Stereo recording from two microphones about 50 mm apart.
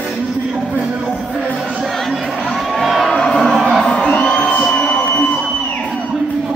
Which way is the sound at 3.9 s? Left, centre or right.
Left.